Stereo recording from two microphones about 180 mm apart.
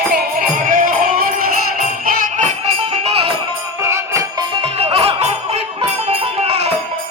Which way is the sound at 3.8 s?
15° right (ahead or behind).